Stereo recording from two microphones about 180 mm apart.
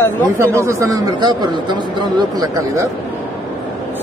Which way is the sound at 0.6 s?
15° right (ahead or behind).